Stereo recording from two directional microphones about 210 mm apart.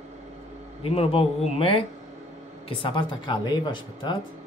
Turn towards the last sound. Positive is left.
turn(degrees=20)  # may be behind; listen again after turning